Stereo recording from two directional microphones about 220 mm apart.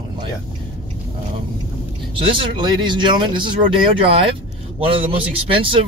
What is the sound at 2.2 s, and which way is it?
Speech, 25° right (ahead or behind).